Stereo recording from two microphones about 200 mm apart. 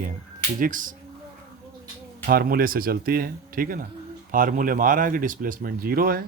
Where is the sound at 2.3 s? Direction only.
45° right (ahead or behind).